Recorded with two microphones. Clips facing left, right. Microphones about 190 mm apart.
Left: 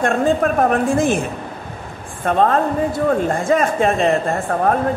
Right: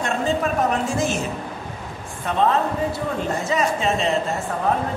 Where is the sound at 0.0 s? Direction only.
55° left (ahead or behind).